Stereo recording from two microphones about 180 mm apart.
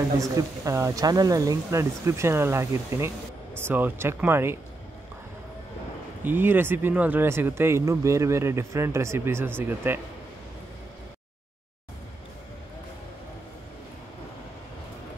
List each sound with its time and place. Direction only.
0.2 s speech: 20° right (ahead or behind)
6.2 s speech: 10° right (ahead or behind)